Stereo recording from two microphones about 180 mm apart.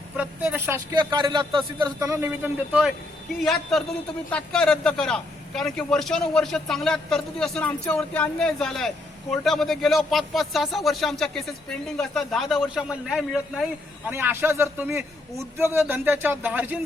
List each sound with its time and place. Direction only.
0.2 s speech: 10° right (ahead or behind)
3.4 s a man's voice: centre (ahead or behind)